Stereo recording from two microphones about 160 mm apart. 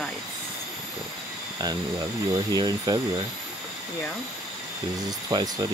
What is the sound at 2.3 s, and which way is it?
Speech, 25° right (ahead or behind).